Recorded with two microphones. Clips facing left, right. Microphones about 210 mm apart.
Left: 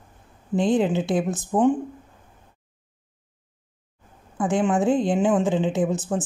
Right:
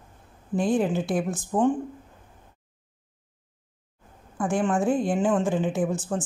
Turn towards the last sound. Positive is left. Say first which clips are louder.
# left 3 dB
turn(degrees=20)  # may be behind; listen again after turning